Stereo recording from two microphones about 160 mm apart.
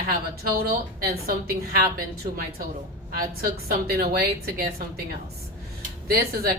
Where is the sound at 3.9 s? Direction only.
75° right (ahead or behind).